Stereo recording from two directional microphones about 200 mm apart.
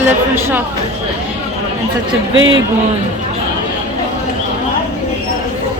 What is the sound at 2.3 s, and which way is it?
Speech, 70° right (ahead or behind).